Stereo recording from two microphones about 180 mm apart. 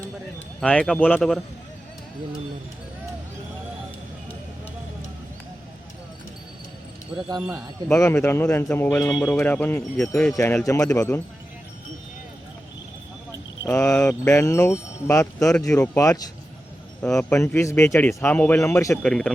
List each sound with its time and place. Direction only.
0.6 s speech: 5° left (ahead or behind)
7.3 s speech: 20° right (ahead or behind)
7.9 s speech: 10° left (ahead or behind)
13.7 s speech: 10° left (ahead or behind)
19.0 s speech: 5° left (ahead or behind)